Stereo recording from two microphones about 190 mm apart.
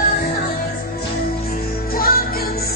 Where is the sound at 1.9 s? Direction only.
50° left (ahead or behind).